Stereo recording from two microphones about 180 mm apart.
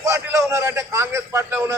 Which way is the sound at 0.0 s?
15° right (ahead or behind).